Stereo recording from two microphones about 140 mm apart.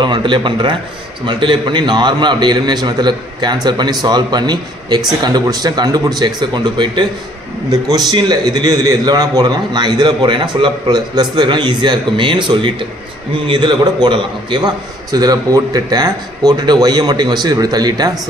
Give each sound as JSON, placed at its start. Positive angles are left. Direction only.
{"t": 0.0, "sound": "a man's voice", "side_deg": -35}